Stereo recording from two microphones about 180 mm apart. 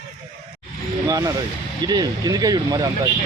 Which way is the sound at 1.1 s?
20° right (ahead or behind).